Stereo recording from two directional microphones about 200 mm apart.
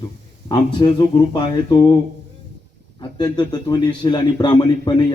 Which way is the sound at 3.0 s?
20° left (ahead or behind).